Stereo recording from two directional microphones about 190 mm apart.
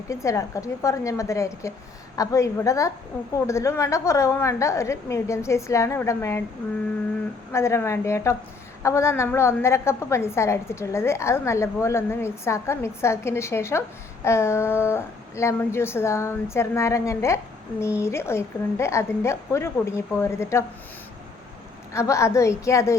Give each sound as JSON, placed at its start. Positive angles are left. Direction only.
{"t": 0.1, "sound": "a woman's voice", "side_deg": 15}
{"t": 7.5, "sound": "a woman's voice", "side_deg": 15}
{"t": 21.9, "sound": "a woman's voice", "side_deg": 15}